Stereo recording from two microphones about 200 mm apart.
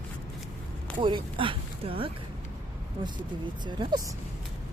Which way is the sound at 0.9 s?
25° right (ahead or behind).